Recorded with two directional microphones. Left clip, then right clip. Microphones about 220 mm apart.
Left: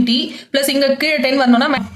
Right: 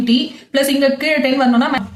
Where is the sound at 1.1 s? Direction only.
45° left (ahead or behind).